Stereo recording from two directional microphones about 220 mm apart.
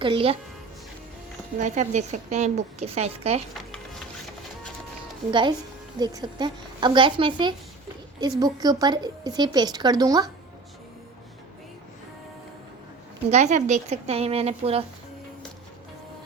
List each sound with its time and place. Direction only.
0.0 s a woman's voice: 25° right (ahead or behind)
1.5 s a woman's voice: 35° right (ahead or behind)
5.3 s a woman's voice: 20° right (ahead or behind)
8.6 s a woman's voice: 20° right (ahead or behind)
13.3 s a woman's voice: 30° right (ahead or behind)